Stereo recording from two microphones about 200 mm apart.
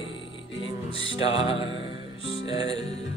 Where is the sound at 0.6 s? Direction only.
30° left (ahead or behind).